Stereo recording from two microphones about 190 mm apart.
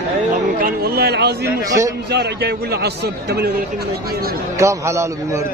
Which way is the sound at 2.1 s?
60° right (ahead or behind).